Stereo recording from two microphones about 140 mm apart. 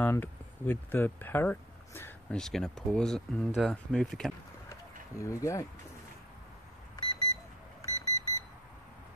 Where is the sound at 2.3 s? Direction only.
5° left (ahead or behind).